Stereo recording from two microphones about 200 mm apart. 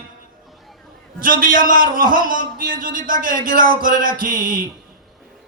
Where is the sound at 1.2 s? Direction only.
45° right (ahead or behind).